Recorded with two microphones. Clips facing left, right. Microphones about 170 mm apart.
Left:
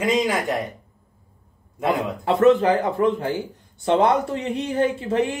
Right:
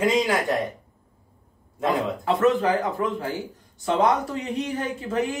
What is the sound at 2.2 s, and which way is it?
A man's voice, 30° left (ahead or behind).